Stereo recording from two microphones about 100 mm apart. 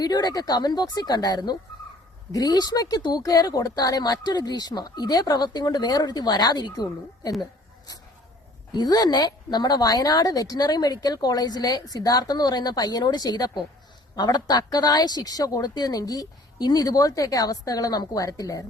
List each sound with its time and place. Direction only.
0.0 s a woman's voice: 45° left (ahead or behind)
8.7 s a woman's voice: 40° left (ahead or behind)